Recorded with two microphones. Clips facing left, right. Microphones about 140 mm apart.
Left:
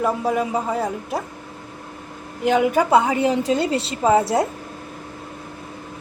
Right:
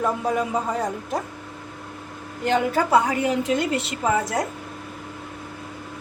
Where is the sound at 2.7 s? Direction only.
25° left (ahead or behind).